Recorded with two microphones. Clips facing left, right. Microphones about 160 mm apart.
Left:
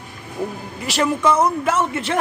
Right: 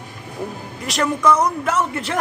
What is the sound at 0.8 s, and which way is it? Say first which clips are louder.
Speech: left 1 dB; 5° left (ahead or behind).